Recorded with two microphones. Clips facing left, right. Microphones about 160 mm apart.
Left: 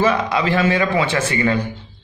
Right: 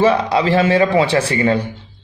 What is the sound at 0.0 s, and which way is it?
A man's voice, 30° right (ahead or behind).